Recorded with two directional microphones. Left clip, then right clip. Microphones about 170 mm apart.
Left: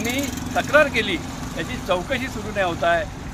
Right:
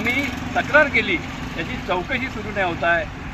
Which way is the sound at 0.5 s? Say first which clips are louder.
Right 1 dB; 25° left (ahead or behind).